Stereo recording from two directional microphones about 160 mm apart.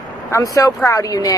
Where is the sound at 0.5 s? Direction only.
20° left (ahead or behind).